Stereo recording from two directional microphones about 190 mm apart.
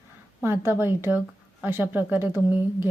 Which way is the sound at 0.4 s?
10° right (ahead or behind).